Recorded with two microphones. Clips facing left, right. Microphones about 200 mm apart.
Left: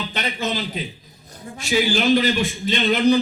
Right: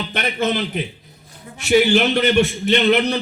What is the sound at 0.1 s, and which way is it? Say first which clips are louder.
A man's voice: right 8 dB; 55° right (ahead or behind).